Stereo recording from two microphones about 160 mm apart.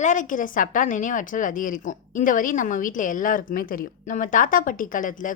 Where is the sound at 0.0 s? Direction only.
50° left (ahead or behind).